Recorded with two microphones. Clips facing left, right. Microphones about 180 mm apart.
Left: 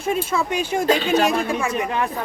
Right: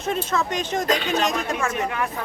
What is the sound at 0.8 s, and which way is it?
Speech, 30° left (ahead or behind).